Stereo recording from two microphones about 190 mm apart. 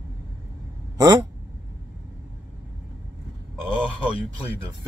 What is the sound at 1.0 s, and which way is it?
Speech, 20° right (ahead or behind).